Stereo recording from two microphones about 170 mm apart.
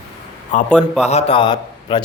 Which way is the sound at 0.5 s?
45° left (ahead or behind).